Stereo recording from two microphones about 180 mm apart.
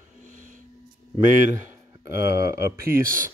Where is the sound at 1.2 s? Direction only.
45° right (ahead or behind).